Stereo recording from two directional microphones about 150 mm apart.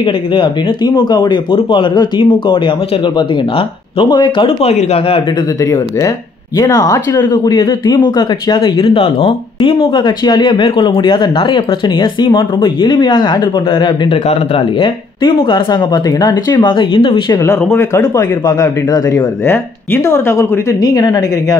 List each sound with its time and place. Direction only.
0.0 s speech: 30° left (ahead or behind)
5.6 s speech: 20° left (ahead or behind)
8.8 s speech: 35° left (ahead or behind)
17.4 s speech: 20° left (ahead or behind)